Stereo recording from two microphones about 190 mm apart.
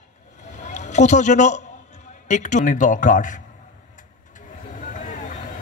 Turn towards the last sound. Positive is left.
turn(degrees=40)  # may be behind; listen again after turning